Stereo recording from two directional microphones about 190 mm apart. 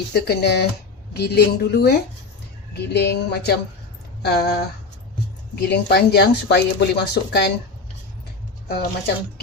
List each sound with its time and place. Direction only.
0.1 s speech: 60° left (ahead or behind)
5.6 s speech: 60° left (ahead or behind)
8.6 s speech: 55° left (ahead or behind)